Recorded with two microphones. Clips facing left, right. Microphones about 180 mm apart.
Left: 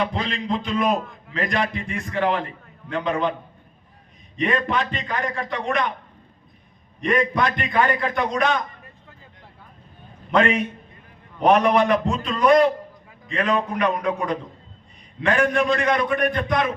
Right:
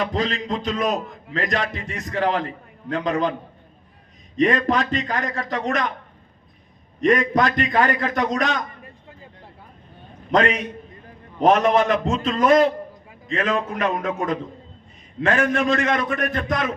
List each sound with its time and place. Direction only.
0.0 s a man's voice: 40° right (ahead or behind)
4.4 s a man's voice: 40° right (ahead or behind)
7.0 s a man's voice: 40° right (ahead or behind)
10.3 s a man's voice: 40° right (ahead or behind)